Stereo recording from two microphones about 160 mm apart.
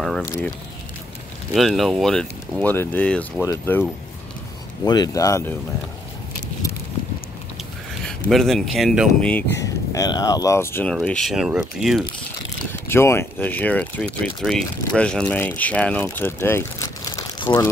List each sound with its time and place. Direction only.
0.0 s speech: 5° left (ahead or behind)
1.5 s speech: centre (ahead or behind)
4.8 s speech: 25° left (ahead or behind)
8.0 s speech: 5° left (ahead or behind)
9.3 s speech: 15° left (ahead or behind)
10.9 s speech: 5° left (ahead or behind)
12.8 s speech: 15° left (ahead or behind)